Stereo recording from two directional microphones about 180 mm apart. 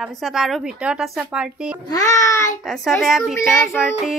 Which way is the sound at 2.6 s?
Centre (ahead or behind).